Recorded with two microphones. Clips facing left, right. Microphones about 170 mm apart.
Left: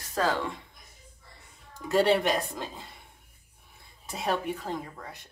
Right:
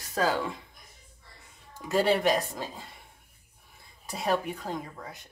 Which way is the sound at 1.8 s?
Centre (ahead or behind).